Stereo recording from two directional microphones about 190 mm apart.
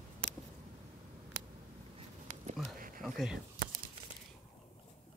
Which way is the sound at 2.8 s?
45° right (ahead or behind).